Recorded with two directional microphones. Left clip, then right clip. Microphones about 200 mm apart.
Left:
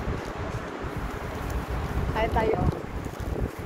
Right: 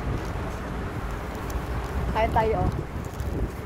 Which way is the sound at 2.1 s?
30° right (ahead or behind).